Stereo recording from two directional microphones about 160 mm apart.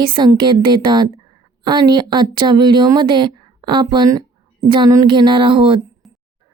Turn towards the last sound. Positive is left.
turn(degrees=0)  # may be behind; listen again after turning